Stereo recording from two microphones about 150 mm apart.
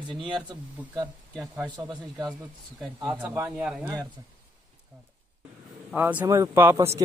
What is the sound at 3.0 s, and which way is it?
Speech, 10° right (ahead or behind).